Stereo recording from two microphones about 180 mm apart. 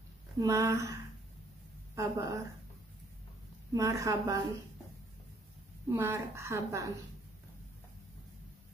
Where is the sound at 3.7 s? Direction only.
15° right (ahead or behind).